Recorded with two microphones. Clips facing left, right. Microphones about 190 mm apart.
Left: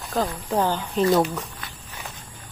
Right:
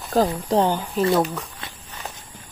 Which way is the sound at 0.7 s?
5° right (ahead or behind).